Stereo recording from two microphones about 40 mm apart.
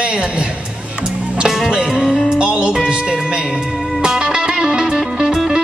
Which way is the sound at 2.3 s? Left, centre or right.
Right.